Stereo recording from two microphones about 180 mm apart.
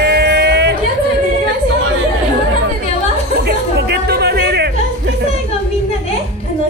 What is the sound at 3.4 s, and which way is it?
Music, 65° right (ahead or behind).